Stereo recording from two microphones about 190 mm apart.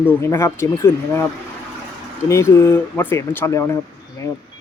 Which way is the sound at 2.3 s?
15° left (ahead or behind).